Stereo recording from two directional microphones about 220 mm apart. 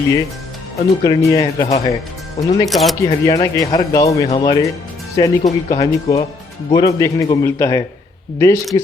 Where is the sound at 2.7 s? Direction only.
Centre (ahead or behind).